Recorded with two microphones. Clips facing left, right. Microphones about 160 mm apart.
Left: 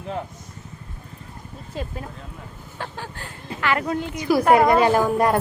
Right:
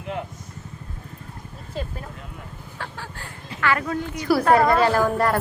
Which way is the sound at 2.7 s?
20° left (ahead or behind).